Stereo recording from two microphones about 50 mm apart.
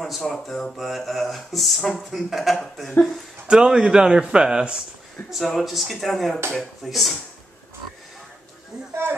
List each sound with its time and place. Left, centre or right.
0.2 s speech: centre
3.4 s a man's voice: centre
5.3 s speech: centre